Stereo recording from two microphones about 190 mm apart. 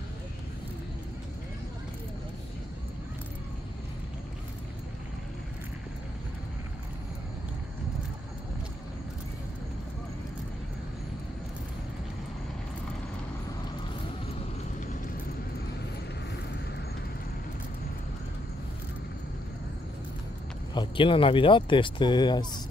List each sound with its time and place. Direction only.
20.7 s speech: 25° left (ahead or behind)